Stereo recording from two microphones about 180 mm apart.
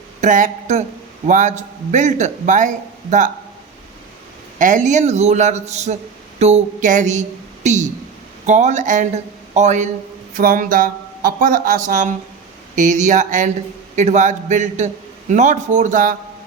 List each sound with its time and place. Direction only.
0.2 s a man's voice: 45° right (ahead or behind)
4.5 s a woman's voice: 45° right (ahead or behind)